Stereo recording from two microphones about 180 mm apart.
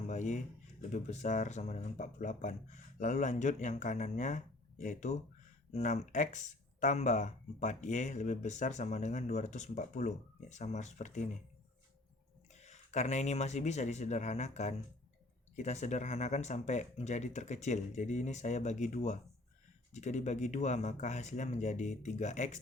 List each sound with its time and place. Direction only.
0.1 s speech: 40° left (ahead or behind)
12.5 s speech: 40° left (ahead or behind)